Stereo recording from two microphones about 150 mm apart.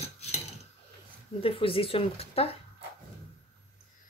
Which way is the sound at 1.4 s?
35° left (ahead or behind).